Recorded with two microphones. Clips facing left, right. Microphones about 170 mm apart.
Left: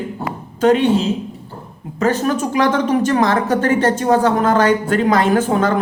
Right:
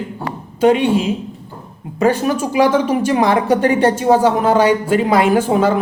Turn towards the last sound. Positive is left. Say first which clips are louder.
# right 2 dB
turn(degrees=-10)  # may be behind; listen again after turning